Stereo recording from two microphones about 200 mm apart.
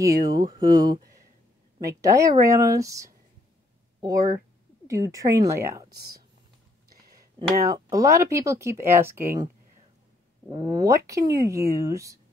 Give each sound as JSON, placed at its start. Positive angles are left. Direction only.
{"t": 0.0, "sound": "speech", "side_deg": -20}
{"t": 7.3, "sound": "speech", "side_deg": -15}
{"t": 10.5, "sound": "speech", "side_deg": -15}